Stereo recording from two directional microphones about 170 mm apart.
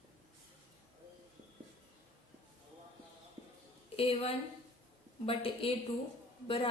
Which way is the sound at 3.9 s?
35° left (ahead or behind).